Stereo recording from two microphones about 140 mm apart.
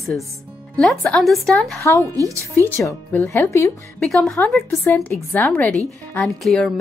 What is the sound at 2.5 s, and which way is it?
Speech, 20° left (ahead or behind).